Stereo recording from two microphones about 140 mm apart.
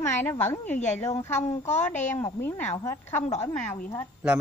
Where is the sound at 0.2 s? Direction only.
15° left (ahead or behind).